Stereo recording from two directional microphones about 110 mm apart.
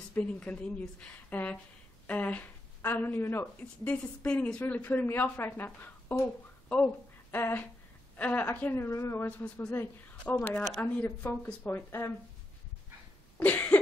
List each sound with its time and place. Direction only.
0.1 s a woman's voice: 10° left (ahead or behind)
10.5 s a woman's voice: 5° left (ahead or behind); by 12.1 s 20° left (ahead or behind)
13.4 s cough: 15° left (ahead or behind)